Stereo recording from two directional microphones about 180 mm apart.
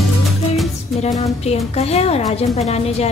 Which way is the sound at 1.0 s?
35° left (ahead or behind).